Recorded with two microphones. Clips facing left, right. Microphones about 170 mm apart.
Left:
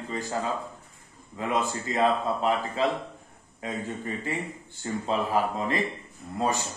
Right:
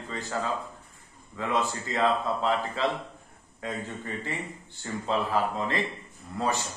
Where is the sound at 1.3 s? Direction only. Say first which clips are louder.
Left 1 dB; 20° left (ahead or behind).